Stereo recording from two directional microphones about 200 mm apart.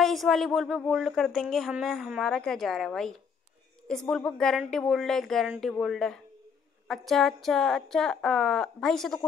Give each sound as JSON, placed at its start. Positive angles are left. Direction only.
{"t": 0.0, "sound": "a woman's voice", "side_deg": 0}